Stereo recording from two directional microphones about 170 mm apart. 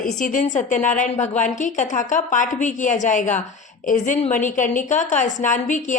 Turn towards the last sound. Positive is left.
turn(degrees=45)  # may be behind; listen again after turning